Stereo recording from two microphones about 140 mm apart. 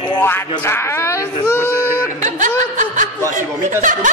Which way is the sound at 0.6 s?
20° left (ahead or behind).